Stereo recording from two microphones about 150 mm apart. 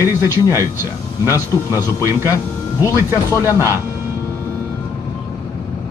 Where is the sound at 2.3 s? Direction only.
20° left (ahead or behind).